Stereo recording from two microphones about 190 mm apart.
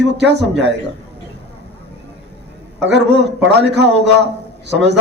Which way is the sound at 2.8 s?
65° right (ahead or behind).